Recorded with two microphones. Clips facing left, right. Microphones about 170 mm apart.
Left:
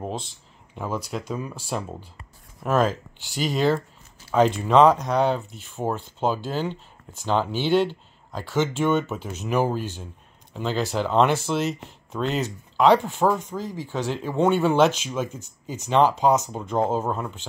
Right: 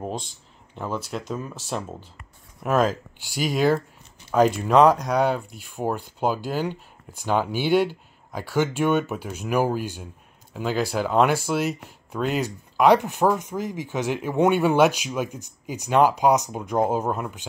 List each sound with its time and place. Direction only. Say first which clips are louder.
0.7 s speech: even; 5° left (ahead or behind)
2.6 s speech: even; centre (ahead or behind)